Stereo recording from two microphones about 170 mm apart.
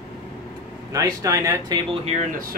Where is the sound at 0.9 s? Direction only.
20° right (ahead or behind).